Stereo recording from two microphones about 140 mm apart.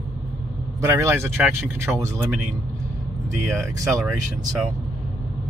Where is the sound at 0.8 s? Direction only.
20° right (ahead or behind).